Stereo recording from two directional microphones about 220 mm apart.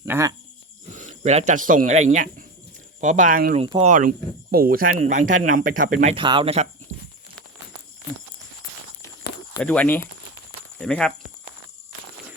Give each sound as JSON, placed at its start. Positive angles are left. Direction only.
{"t": 0.0, "sound": "speech", "side_deg": -15}
{"t": 0.9, "sound": "speech", "side_deg": -30}
{"t": 9.6, "sound": "speech", "side_deg": 5}